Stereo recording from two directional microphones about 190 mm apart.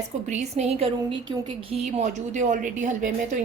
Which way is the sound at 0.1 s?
35° right (ahead or behind).